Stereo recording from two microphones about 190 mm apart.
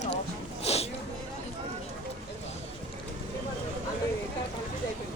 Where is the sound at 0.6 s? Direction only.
35° left (ahead or behind).